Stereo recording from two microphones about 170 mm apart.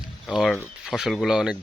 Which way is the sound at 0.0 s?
5° right (ahead or behind).